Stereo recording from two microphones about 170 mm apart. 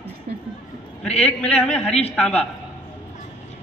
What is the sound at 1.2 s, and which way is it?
A man's voice, 5° left (ahead or behind).